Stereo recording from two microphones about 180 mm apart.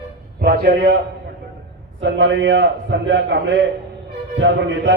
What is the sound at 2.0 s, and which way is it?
A man's voice, 75° right (ahead or behind).